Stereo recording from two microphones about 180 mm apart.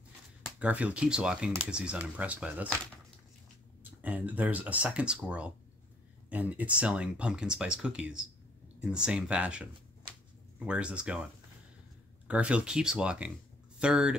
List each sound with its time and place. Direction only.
0.6 s speech: 10° right (ahead or behind)
3.8 s speech: 10° right (ahead or behind)
12.3 s speech: 5° right (ahead or behind)